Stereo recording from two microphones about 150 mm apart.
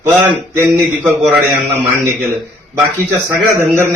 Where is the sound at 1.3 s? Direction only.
10° right (ahead or behind).